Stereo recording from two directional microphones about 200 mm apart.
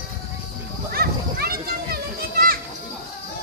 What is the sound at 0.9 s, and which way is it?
Children playing, 50° right (ahead or behind).